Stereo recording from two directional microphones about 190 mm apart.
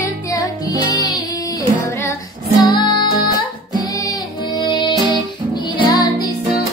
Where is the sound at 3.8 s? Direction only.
20° left (ahead or behind).